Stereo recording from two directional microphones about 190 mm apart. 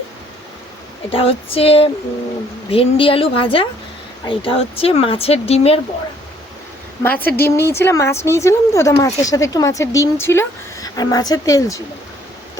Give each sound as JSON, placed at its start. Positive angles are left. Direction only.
{"t": 1.1, "sound": "a woman's voice", "side_deg": 30}
{"t": 7.0, "sound": "a woman's voice", "side_deg": 10}